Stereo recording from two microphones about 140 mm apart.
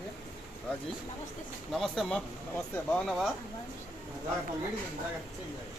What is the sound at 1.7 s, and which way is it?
Speech, centre (ahead or behind).